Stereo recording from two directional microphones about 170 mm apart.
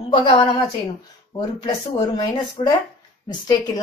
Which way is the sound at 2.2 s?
25° left (ahead or behind).